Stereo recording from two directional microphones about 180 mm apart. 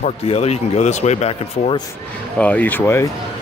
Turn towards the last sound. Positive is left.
turn(degrees=10)  # may be behind; listen again after turning